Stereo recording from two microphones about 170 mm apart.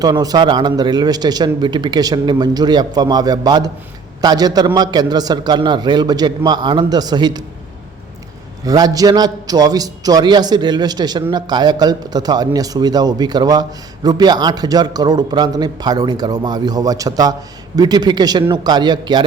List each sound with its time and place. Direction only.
0.0 s a man's voice: 20° right (ahead or behind)
8.6 s a man's voice: 20° right (ahead or behind)